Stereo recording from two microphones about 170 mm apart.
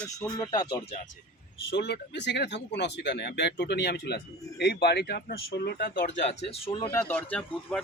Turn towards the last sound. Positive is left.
turn(degrees=10)  # may be behind; listen again after turning